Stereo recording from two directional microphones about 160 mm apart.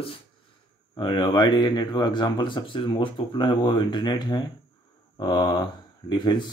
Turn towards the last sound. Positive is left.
turn(degrees=30)  # may be behind; listen again after turning